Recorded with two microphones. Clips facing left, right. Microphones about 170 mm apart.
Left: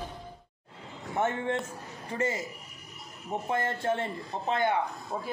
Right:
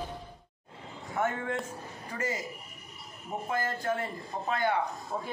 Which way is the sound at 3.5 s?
25° left (ahead or behind).